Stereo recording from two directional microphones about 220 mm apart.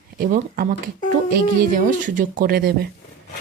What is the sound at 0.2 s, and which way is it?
A woman's voice, 40° right (ahead or behind).